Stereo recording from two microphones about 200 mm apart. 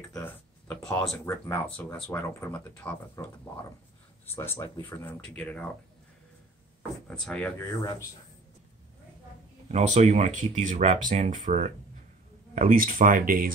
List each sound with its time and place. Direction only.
0.1 s speech: 15° left (ahead or behind)
4.4 s speech: 10° left (ahead or behind)
7.1 s speech: 5° left (ahead or behind)
9.7 s speech: 35° right (ahead or behind)